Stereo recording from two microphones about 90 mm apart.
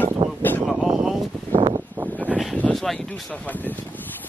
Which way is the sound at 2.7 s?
5° left (ahead or behind).